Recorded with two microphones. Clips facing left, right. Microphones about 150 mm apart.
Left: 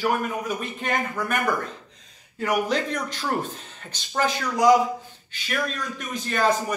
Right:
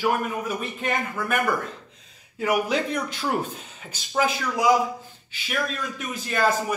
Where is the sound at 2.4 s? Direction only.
5° right (ahead or behind).